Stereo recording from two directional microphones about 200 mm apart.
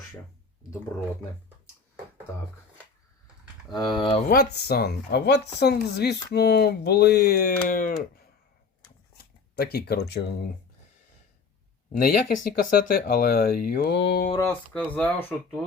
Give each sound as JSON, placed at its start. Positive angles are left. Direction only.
{"t": 3.8, "sound": "speech", "side_deg": 20}
{"t": 4.3, "sound": "speech", "side_deg": 50}
{"t": 9.6, "sound": "speech", "side_deg": 50}
{"t": 12.0, "sound": "speech", "side_deg": 50}
{"t": 14.7, "sound": "speech", "side_deg": 5}
{"t": 15.3, "sound": "speech", "side_deg": -5}